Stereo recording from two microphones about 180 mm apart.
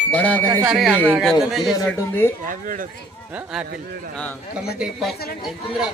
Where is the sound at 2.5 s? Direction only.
45° right (ahead or behind).